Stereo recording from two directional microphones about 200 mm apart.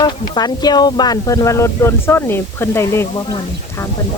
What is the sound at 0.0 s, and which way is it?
Speech, 20° left (ahead or behind).